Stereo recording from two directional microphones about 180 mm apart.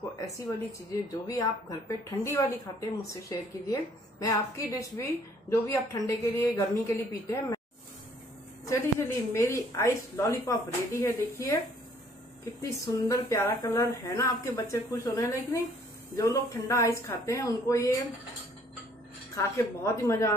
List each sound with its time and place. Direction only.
1.2 s speech: 20° left (ahead or behind)
8.6 s speech: 15° left (ahead or behind)
12.6 s speech: 20° left (ahead or behind)
19.3 s speech: 15° left (ahead or behind)